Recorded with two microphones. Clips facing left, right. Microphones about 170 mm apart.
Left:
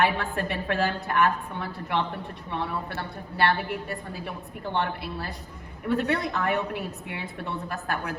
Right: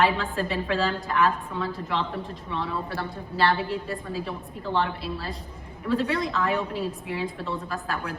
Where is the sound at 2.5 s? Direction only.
65° left (ahead or behind).